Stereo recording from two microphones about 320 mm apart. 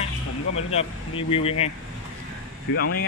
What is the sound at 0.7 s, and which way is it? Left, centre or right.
Speech, centre.